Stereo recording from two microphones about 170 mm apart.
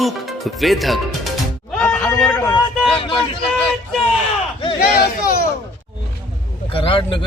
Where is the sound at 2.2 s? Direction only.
10° left (ahead or behind).